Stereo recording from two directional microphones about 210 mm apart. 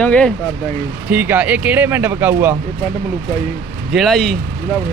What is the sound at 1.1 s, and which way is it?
Speech, 10° right (ahead or behind).